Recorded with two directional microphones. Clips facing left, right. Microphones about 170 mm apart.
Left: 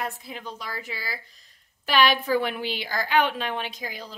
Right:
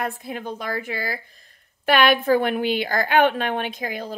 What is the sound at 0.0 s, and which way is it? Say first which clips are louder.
A woman's voice: right 5 dB; 55° right (ahead or behind).